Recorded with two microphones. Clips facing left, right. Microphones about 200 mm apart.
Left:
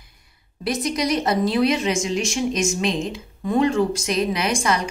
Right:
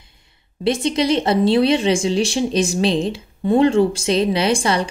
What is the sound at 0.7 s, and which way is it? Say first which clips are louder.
A woman's voice: right 5 dB; 25° right (ahead or behind).